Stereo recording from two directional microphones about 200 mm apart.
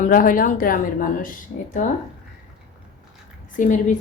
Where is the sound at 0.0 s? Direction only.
40° left (ahead or behind).